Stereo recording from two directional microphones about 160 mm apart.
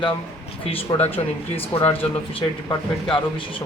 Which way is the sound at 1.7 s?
35° left (ahead or behind).